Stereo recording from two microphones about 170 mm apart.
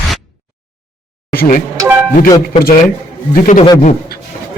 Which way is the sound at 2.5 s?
50° left (ahead or behind).